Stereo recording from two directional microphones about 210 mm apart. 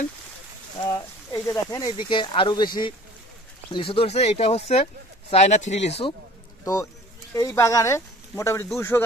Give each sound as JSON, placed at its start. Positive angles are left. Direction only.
{"t": 0.7, "sound": "speech", "side_deg": 20}
{"t": 6.6, "sound": "speech", "side_deg": 15}